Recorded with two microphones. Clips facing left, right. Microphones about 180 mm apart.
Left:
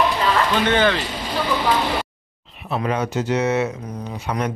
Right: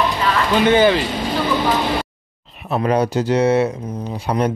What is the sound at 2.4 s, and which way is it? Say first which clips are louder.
Speech: right 4 dB; 40° right (ahead or behind).